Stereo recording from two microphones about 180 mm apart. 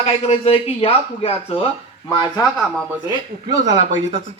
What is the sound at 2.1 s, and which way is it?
Speech, 25° left (ahead or behind).